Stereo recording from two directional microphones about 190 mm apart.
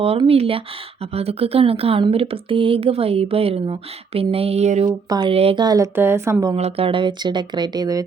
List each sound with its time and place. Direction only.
0.0 s a woman's voice: 30° right (ahead or behind)
5.0 s a woman's voice: 25° right (ahead or behind)
6.6 s a woman's voice: 30° right (ahead or behind)